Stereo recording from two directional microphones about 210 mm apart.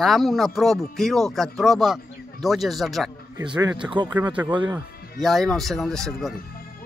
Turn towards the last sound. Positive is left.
turn(degrees=0)  # may be behind; listen again after turning